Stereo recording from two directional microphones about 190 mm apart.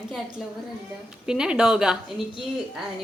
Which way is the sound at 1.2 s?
5° right (ahead or behind).